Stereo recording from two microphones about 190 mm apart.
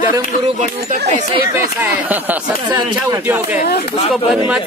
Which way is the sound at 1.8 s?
10° right (ahead or behind).